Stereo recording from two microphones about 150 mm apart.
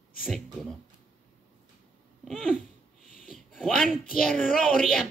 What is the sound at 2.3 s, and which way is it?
Speech, centre (ahead or behind).